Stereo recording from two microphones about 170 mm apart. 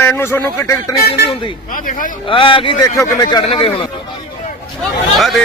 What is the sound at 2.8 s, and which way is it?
Speech, 20° left (ahead or behind).